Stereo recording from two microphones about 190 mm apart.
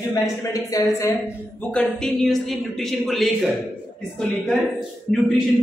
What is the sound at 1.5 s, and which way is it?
Speech, 5° left (ahead or behind).